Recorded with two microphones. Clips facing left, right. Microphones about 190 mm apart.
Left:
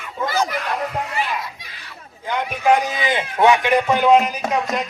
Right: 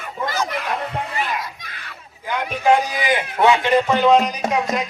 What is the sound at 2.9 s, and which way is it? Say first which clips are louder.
Speech: right 1 dB; 20° left (ahead or behind).